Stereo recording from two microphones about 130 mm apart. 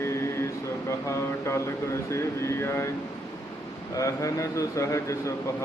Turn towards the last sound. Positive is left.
turn(degrees=25)  # may be behind; listen again after turning